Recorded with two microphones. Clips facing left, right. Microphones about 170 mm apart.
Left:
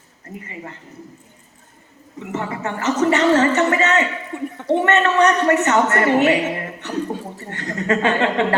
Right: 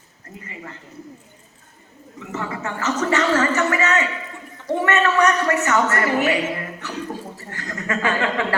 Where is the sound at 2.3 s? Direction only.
20° left (ahead or behind).